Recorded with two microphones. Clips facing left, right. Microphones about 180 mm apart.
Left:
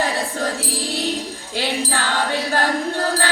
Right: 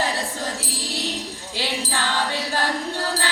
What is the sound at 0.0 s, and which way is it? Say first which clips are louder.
Music: left 4 dB; 55° left (ahead or behind).